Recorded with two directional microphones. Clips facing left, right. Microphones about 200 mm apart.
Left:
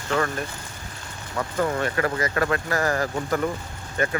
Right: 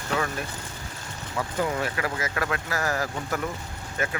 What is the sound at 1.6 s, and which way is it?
Speech, 5° right (ahead or behind).